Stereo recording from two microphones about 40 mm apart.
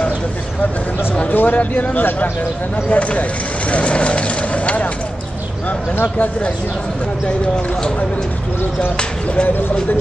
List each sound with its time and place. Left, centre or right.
1.3 s speech: left
2.9 s speech: left
8.9 s speech: left